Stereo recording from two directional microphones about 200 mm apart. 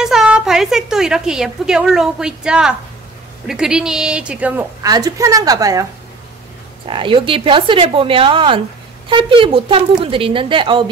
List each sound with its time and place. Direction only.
0.0 s a woman's voice: 5° right (ahead or behind)
4.8 s a woman's voice: 20° right (ahead or behind)
6.9 s a woman's voice: 25° right (ahead or behind)